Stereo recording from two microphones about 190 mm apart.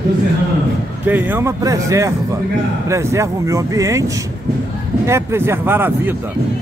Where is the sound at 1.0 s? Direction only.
10° right (ahead or behind).